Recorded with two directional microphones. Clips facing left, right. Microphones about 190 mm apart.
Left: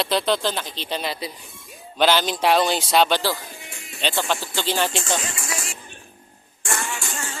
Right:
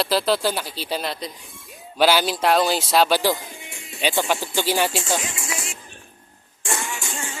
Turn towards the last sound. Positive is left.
turn(degrees=-20)  # may be behind; listen again after turning